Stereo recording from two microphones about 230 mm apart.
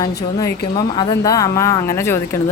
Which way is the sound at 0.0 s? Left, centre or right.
Centre.